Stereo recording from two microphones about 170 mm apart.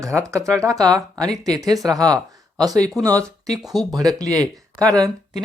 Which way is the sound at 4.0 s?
20° right (ahead or behind).